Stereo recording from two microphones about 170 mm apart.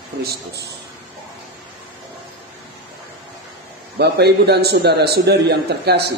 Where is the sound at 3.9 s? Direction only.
75° right (ahead or behind).